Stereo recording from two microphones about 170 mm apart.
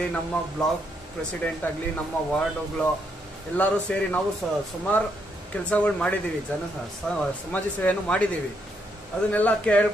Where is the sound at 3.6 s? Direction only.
10° left (ahead or behind).